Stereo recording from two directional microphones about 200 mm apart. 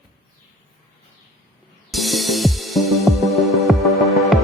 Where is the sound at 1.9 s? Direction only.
Centre (ahead or behind).